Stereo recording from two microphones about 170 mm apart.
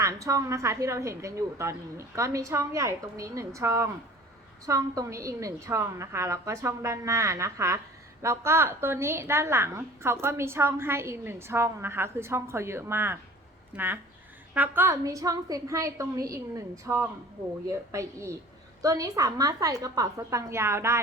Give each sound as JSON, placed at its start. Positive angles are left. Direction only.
{"t": 0.0, "sound": "a woman's voice", "side_deg": -20}